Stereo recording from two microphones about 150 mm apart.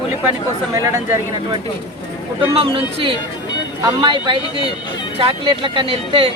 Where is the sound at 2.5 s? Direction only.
35° right (ahead or behind).